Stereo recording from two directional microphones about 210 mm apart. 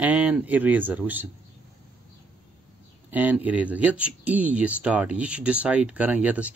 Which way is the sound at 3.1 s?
10° right (ahead or behind).